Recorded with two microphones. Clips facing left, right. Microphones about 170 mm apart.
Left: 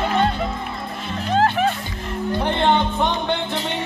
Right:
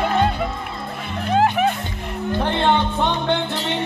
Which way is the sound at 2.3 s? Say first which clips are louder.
Even; 15° left (ahead or behind).